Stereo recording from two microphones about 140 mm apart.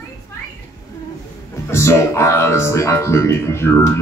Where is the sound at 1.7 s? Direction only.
20° left (ahead or behind).